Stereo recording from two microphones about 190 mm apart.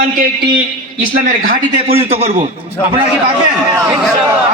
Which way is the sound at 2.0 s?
35° right (ahead or behind).